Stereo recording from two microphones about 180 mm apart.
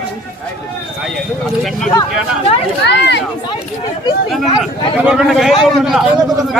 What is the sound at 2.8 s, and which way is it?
Run, 70° left (ahead or behind).